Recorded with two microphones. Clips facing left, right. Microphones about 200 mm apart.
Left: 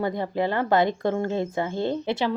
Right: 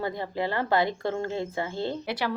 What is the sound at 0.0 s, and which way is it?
A woman's voice, 20° left (ahead or behind).